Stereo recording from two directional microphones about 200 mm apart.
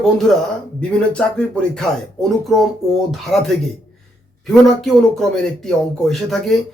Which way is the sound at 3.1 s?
Centre (ahead or behind).